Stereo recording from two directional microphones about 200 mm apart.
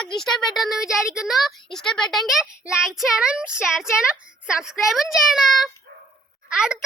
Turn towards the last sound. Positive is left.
turn(degrees=-5)  # may be behind; listen again after turning